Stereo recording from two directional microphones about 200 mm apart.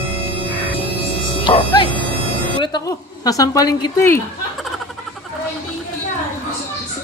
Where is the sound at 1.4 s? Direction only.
25° left (ahead or behind).